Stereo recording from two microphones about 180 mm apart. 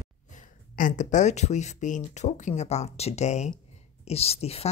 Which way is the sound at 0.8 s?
45° left (ahead or behind).